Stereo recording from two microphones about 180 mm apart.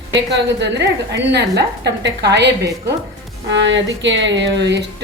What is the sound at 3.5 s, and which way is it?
Speech, 85° right.